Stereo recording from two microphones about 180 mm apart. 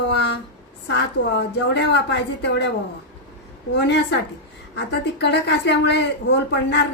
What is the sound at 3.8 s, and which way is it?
Speech, 75° left (ahead or behind).